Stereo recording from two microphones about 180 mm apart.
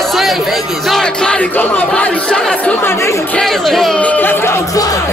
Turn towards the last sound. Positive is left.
turn(degrees=20)  # may be behind; listen again after turning